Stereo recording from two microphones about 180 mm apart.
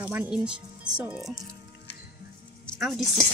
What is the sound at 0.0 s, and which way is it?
Speech, 10° right (ahead or behind).